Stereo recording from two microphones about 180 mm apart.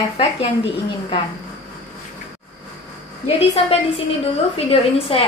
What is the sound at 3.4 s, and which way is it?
A woman's voice, 30° left (ahead or behind).